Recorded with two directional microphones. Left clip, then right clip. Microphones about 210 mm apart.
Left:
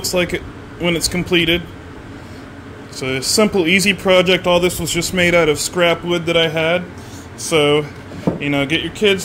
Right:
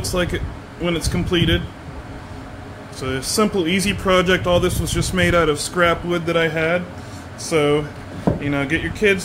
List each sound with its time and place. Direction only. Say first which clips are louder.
0.0 s speech: left 4 dB; 20° left (ahead or behind)
3.0 s speech: left 4 dB; 25° left (ahead or behind)